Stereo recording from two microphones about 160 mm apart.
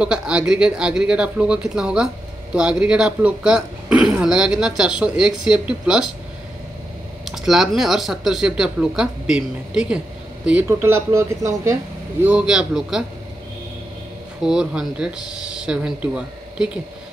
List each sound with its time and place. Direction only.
0.0 s speech: 5° right (ahead or behind)
7.2 s speech: centre (ahead or behind); by 11.7 s 20° right (ahead or behind)
12.2 s speech: 10° right (ahead or behind)
14.4 s speech: 5° right (ahead or behind)